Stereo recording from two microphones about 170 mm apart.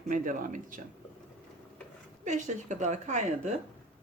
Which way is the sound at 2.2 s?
45° right (ahead or behind).